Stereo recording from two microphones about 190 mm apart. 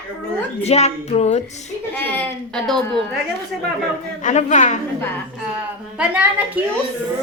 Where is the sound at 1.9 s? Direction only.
10° left (ahead or behind).